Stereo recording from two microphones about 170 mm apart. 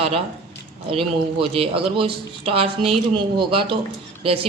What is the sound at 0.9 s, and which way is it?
Speech, 35° right (ahead or behind).